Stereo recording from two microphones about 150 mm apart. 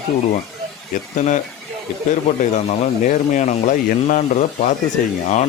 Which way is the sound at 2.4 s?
50° left (ahead or behind).